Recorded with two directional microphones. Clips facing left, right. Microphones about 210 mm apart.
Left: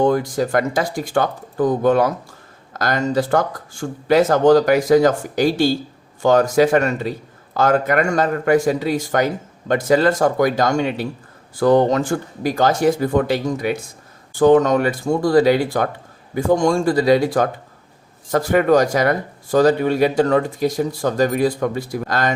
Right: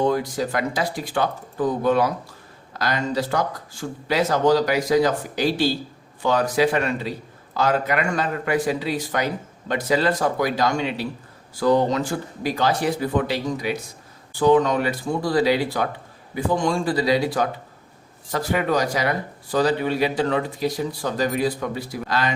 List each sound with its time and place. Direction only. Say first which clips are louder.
0.0 s speech: left 4 dB; 50° left (ahead or behind)